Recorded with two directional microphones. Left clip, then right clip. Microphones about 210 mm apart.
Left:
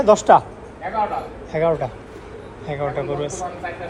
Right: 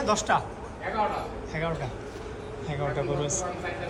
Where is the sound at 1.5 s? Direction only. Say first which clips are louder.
Left 13 dB; centre (ahead or behind).